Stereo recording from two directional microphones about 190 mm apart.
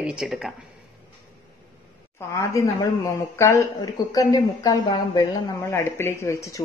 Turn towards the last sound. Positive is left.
turn(degrees=15)  # may be behind; listen again after turning